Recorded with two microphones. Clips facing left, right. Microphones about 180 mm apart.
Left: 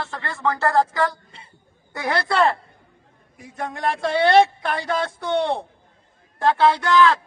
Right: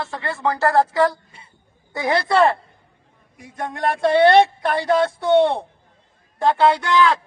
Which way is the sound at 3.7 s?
Centre (ahead or behind).